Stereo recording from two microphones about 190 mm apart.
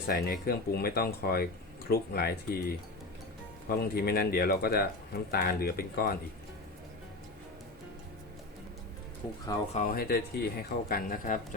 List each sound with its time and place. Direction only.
0.1 s speech: 50° left (ahead or behind)
9.7 s speech: 45° left (ahead or behind)